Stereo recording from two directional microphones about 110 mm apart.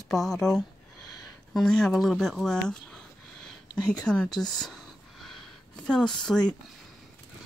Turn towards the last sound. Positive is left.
turn(degrees=5)  # may be behind; listen again after turning